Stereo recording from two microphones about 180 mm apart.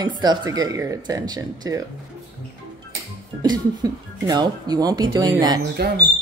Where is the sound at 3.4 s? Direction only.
20° right (ahead or behind).